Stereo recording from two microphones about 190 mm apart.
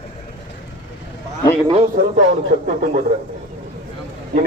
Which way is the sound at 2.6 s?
40° right (ahead or behind).